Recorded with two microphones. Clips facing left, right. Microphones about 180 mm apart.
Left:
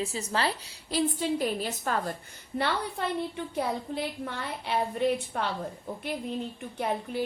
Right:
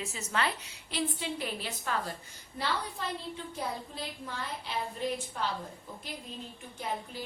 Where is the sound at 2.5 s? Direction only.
60° left (ahead or behind).